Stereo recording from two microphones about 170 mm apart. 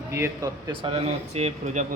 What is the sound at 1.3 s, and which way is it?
Speech, 40° right (ahead or behind).